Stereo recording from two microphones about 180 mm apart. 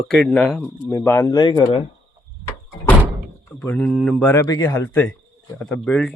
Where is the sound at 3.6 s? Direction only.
10° left (ahead or behind).